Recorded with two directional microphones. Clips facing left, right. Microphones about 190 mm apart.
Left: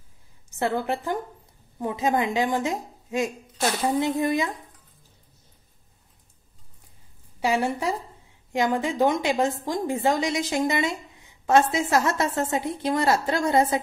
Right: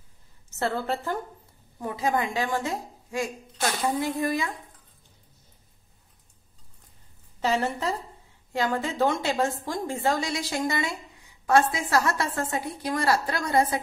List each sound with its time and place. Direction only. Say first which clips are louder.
0.5 s a woman's voice: left 2 dB; 15° left (ahead or behind)
7.3 s a woman's voice: left 2 dB; 10° left (ahead or behind)